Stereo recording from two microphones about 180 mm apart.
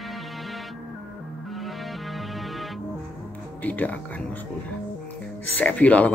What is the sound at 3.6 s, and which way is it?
Speech, 10° left (ahead or behind).